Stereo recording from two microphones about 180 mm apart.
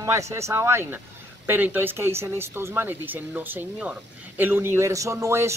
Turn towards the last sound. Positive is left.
turn(degrees=-15)  # may be behind; listen again after turning